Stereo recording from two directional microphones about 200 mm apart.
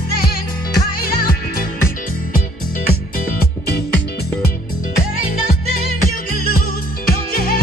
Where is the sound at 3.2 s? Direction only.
45° left (ahead or behind).